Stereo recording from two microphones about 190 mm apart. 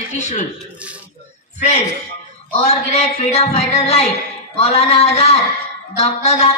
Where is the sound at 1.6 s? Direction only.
35° left (ahead or behind).